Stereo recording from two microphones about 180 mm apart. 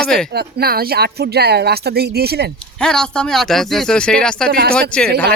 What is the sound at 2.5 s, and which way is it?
Speech, 5° left (ahead or behind).